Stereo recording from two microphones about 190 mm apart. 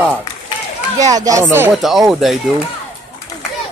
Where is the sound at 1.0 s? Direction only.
20° right (ahead or behind).